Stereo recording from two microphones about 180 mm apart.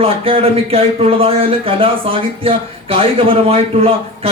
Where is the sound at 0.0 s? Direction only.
30° right (ahead or behind).